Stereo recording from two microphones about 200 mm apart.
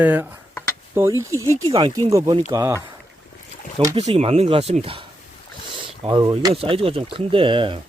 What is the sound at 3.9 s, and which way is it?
Speech, 30° right (ahead or behind).